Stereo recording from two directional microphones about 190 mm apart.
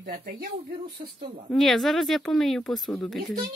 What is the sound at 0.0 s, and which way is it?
Speech, 50° right (ahead or behind).